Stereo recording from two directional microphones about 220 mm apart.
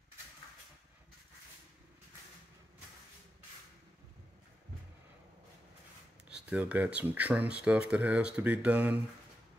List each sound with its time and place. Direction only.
6.2 s speech: 5° right (ahead or behind)